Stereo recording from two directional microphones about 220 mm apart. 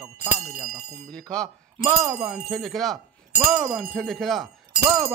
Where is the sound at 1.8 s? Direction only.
15° right (ahead or behind).